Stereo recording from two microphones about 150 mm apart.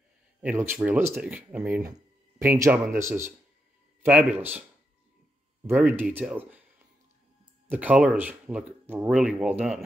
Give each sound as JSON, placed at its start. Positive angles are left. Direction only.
{"t": 0.4, "sound": "speech", "side_deg": -10}
{"t": 1.8, "sound": "speech", "side_deg": -20}
{"t": 5.7, "sound": "speech", "side_deg": 0}
{"t": 7.6, "sound": "speech", "side_deg": -10}